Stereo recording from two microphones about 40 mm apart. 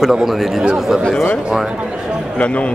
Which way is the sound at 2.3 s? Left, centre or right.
Left.